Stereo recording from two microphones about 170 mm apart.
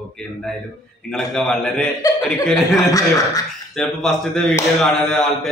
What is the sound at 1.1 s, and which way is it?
A man's voice, centre (ahead or behind).